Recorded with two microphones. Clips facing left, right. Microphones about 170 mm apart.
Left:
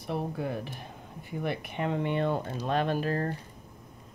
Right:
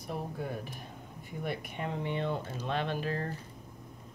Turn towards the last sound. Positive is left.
turn(degrees=45)  # may be behind; listen again after turning